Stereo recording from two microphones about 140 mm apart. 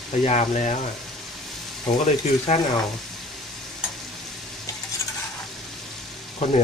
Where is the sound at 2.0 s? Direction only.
50° left (ahead or behind).